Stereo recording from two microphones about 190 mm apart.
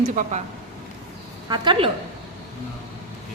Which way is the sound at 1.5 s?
25° right (ahead or behind).